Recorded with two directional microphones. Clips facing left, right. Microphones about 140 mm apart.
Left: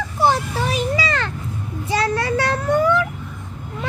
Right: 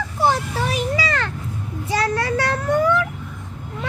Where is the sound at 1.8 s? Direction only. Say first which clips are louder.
Left 1 dB; 25° left (ahead or behind).